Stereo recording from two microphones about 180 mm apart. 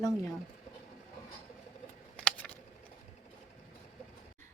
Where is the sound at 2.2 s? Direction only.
5° left (ahead or behind).